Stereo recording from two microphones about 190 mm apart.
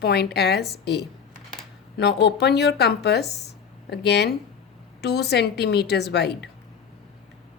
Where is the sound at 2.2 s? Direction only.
60° left (ahead or behind).